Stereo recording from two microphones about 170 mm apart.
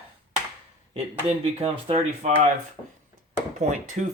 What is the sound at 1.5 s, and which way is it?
Speech, 35° right (ahead or behind).